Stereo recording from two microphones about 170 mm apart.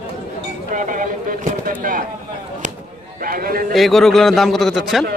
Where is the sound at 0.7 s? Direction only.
50° right (ahead or behind).